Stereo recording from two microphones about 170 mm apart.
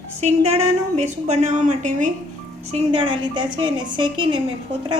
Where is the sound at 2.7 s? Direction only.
30° right (ahead or behind).